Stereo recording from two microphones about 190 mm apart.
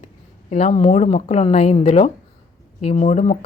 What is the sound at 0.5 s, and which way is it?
A woman's voice, 35° left (ahead or behind).